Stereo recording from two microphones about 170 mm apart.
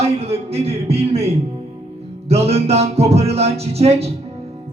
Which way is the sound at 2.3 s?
35° right (ahead or behind).